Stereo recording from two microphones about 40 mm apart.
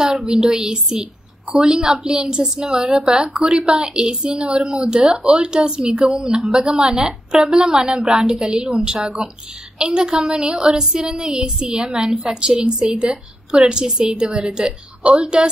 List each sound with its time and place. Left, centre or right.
0.0 s a woman's voice: centre